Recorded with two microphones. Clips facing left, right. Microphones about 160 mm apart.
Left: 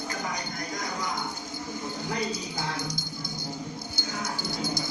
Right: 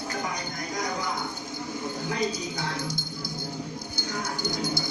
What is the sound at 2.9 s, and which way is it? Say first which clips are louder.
Music: right 2 dB; 25° right (ahead or behind).